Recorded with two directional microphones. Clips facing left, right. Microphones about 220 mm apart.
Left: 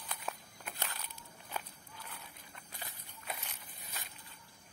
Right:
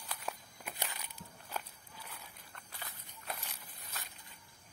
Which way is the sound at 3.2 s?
Centre (ahead or behind).